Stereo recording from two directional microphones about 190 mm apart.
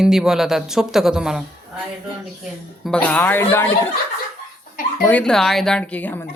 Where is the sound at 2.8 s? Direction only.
5° left (ahead or behind).